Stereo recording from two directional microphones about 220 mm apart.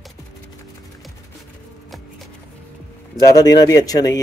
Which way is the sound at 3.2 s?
15° left (ahead or behind).